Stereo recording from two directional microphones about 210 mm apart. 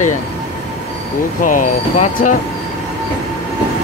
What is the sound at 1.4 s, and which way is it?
Speech, 40° left (ahead or behind).